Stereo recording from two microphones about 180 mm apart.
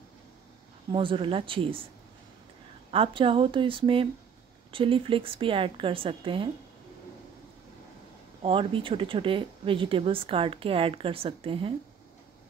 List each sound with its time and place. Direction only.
0.9 s speech: 30° right (ahead or behind)
2.9 s speech: 30° right (ahead or behind)
8.4 s speech: 30° right (ahead or behind)